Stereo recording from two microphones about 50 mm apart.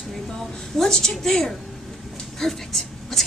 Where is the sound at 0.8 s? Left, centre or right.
Centre.